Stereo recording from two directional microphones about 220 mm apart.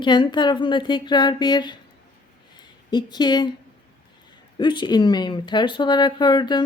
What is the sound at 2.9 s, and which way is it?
Speech, 20° left (ahead or behind).